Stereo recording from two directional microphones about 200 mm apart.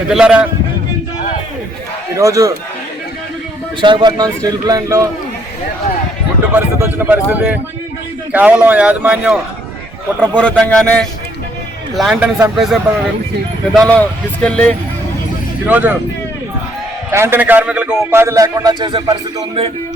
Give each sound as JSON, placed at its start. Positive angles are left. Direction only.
{"t": 0.1, "sound": "speech", "side_deg": -5}
{"t": 2.1, "sound": "a man's voice", "side_deg": -15}
{"t": 3.8, "sound": "a man's voice", "side_deg": -25}
{"t": 6.5, "sound": "a man's voice", "side_deg": -10}
{"t": 10.3, "sound": "speech", "side_deg": 5}
{"t": 15.6, "sound": "a man's voice", "side_deg": -10}
{"t": 17.1, "sound": "a man's voice", "side_deg": -10}